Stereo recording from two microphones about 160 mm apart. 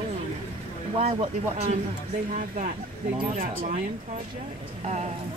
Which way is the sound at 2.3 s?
50° right (ahead or behind).